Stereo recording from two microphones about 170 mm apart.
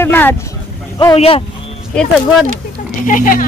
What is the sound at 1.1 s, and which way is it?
Speech, 35° left (ahead or behind).